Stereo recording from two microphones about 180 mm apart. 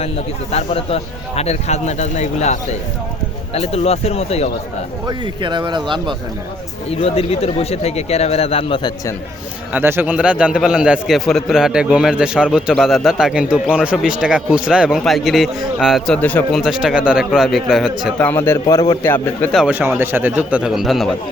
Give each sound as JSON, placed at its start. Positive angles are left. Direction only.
{"t": 0.5, "sound": "speech", "side_deg": 35}
{"t": 5.0, "sound": "speech", "side_deg": -25}
{"t": 6.9, "sound": "speech", "side_deg": 35}
{"t": 9.7, "sound": "a man's voice", "side_deg": -10}
{"t": 18.2, "sound": "a man's voice", "side_deg": 10}